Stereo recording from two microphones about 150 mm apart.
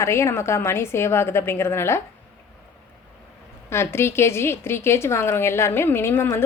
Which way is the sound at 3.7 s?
15° left (ahead or behind).